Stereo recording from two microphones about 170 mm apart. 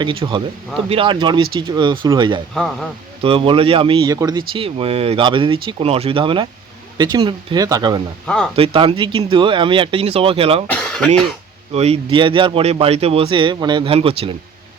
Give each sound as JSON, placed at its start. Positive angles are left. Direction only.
{"t": 0.0, "sound": "speech", "side_deg": -30}
{"t": 10.7, "sound": "speech", "side_deg": 5}
{"t": 11.7, "sound": "speech", "side_deg": -35}